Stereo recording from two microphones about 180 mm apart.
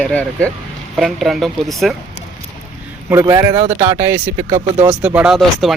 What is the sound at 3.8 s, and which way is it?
Speech, 15° right (ahead or behind).